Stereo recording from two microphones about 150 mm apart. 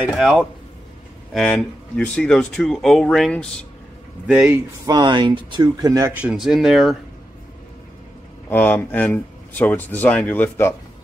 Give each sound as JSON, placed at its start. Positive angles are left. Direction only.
{"t": 0.2, "sound": "speech", "side_deg": 0}
{"t": 4.3, "sound": "a man's voice", "side_deg": -10}
{"t": 4.8, "sound": "speech", "side_deg": -30}
{"t": 6.2, "sound": "speech", "side_deg": 0}
{"t": 8.5, "sound": "speech", "side_deg": 10}